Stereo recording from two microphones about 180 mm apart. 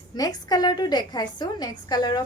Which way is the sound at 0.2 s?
20° left (ahead or behind).